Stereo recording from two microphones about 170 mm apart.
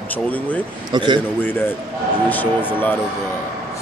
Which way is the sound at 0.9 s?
25° right (ahead or behind).